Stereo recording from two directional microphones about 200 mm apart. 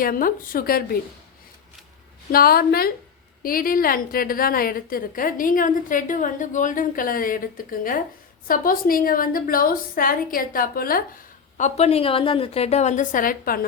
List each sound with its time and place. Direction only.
0.0 s a woman's voice: 45° left (ahead or behind)
2.3 s a woman's voice: 50° left (ahead or behind)
11.5 s a woman's voice: 35° left (ahead or behind)